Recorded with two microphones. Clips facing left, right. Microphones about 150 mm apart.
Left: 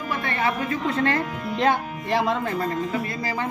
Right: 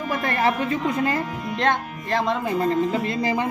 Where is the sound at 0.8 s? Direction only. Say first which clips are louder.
Left 2 dB; 10° right (ahead or behind).